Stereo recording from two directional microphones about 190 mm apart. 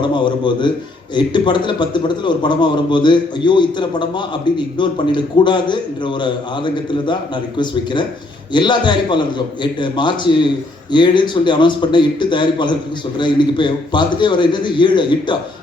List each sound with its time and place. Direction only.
0.0 s a man's voice: 25° left (ahead or behind)
8.5 s a man's voice: 25° left (ahead or behind)